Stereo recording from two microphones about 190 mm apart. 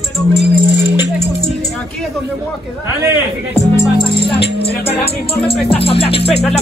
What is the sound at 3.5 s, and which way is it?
Music, 20° left (ahead or behind).